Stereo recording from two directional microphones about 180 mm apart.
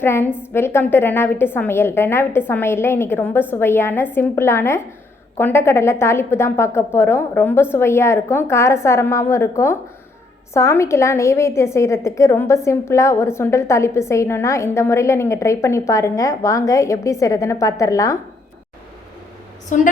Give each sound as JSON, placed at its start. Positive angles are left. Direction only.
{"t": 0.0, "sound": "a woman's voice", "side_deg": 15}
{"t": 19.7, "sound": "a woman's voice", "side_deg": 45}